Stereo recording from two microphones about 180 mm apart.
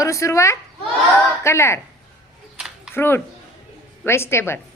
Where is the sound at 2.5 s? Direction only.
5° right (ahead or behind).